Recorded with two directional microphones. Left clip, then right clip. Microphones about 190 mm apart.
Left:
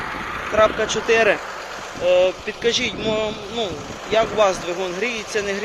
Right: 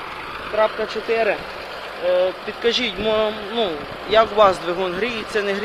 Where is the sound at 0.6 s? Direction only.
25° left (ahead or behind).